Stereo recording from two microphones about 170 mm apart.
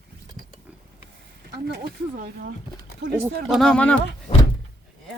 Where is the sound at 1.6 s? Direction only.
70° right (ahead or behind).